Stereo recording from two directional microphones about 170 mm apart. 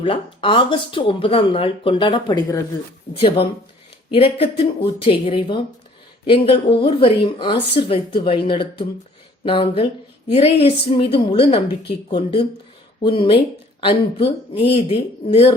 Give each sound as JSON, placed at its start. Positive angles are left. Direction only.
{"t": 0.0, "sound": "speech", "side_deg": 30}
{"t": 14.6, "sound": "speech", "side_deg": 35}